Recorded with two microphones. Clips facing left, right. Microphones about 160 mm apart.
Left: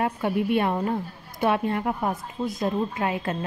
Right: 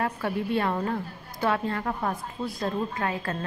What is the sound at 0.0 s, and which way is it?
A woman's voice, 20° left (ahead or behind).